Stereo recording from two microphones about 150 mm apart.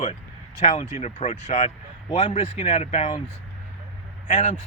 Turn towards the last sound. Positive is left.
turn(degrees=50)  # may be behind; listen again after turning